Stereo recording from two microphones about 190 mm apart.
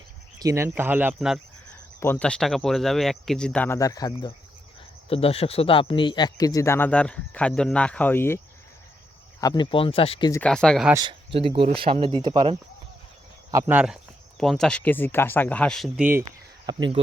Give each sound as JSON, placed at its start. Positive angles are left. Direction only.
{"t": 0.3, "sound": "speech", "side_deg": -15}
{"t": 2.0, "sound": "speech", "side_deg": 10}
{"t": 5.0, "sound": "speech", "side_deg": 30}
{"t": 9.4, "sound": "speech", "side_deg": 20}
{"t": 10.4, "sound": "speech", "side_deg": 5}
{"t": 11.0, "sound": "speech", "side_deg": -30}
{"t": 13.5, "sound": "speech", "side_deg": -15}
{"t": 16.6, "sound": "speech", "side_deg": -25}